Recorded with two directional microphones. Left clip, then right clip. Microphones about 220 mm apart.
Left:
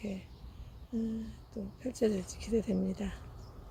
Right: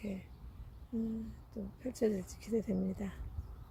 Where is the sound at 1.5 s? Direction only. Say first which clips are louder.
Left 3 dB; 5° right (ahead or behind).